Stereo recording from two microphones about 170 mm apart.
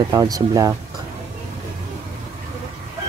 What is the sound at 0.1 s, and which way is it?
Speech, 20° right (ahead or behind).